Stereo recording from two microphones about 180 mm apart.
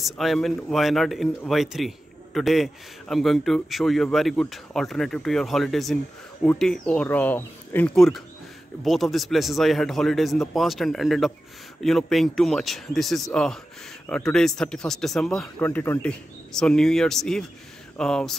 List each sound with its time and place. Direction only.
0.0 s a man's voice: centre (ahead or behind)